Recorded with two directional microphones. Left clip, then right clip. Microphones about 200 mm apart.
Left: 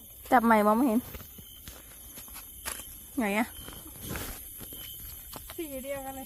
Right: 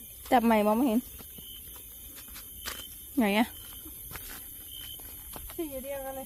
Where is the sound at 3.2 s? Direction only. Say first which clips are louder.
Right 2 dB; 20° right (ahead or behind).